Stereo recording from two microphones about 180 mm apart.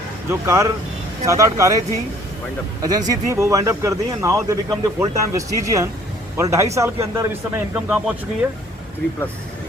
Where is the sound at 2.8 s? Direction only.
20° right (ahead or behind).